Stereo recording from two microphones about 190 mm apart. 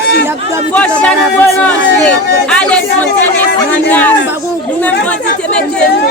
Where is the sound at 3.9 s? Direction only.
10° left (ahead or behind).